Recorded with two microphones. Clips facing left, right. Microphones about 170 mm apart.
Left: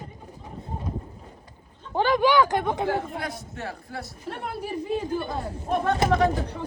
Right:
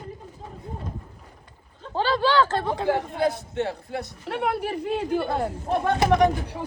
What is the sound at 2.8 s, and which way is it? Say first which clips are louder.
A man's voice: right 4 dB; 20° right (ahead or behind).